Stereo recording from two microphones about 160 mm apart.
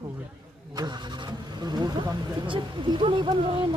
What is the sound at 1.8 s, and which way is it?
Speech, 30° right (ahead or behind).